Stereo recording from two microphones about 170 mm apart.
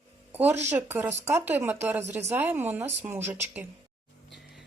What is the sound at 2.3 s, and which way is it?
Speech, 10° right (ahead or behind).